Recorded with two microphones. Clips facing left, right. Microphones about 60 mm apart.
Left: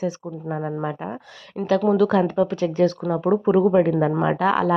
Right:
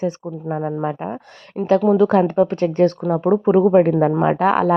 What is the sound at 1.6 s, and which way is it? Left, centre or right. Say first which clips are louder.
Speech: right 4 dB; centre.